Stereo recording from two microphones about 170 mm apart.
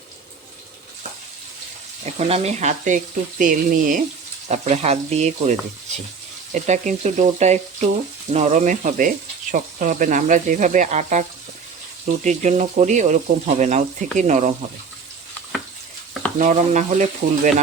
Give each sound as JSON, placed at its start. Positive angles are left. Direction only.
{"t": 2.1, "sound": "speech", "side_deg": -40}
{"t": 4.4, "sound": "frying", "side_deg": -40}
{"t": 6.5, "sound": "speech", "side_deg": -45}
{"t": 16.4, "sound": "speech", "side_deg": -45}